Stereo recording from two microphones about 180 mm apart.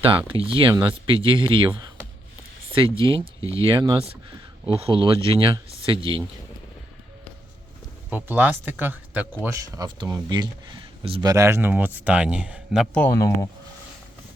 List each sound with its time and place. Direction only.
0.3 s speech: 30° right (ahead or behind)
8.1 s speech: 10° right (ahead or behind)
13.1 s speech: 15° left (ahead or behind)